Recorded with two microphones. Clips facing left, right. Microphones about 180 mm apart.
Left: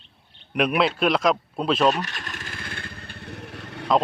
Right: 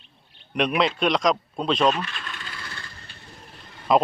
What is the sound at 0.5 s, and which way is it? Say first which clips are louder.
Speech: left 1 dB; 5° left (ahead or behind).